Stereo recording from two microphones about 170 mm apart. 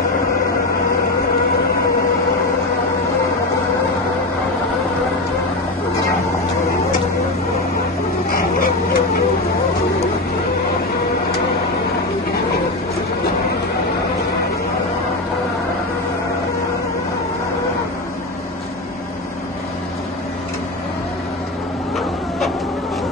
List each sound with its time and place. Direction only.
8.3 s dog: 60° left (ahead or behind)